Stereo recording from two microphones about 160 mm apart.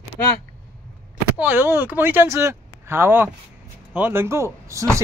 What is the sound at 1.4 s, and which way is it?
A man's voice, 10° right (ahead or behind).